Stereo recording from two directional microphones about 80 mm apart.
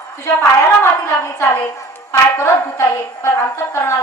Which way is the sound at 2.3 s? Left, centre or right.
Left.